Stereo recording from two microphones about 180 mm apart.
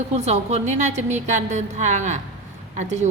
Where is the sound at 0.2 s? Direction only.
40° right (ahead or behind).